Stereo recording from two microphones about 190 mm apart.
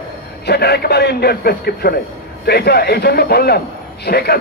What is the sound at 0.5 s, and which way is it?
A man's voice, 55° left (ahead or behind).